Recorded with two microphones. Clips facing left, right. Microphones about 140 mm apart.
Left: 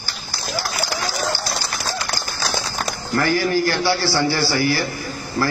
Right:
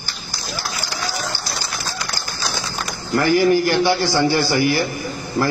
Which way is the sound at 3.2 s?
15° right (ahead or behind).